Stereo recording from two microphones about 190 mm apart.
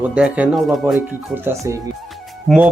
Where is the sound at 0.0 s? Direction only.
5° right (ahead or behind).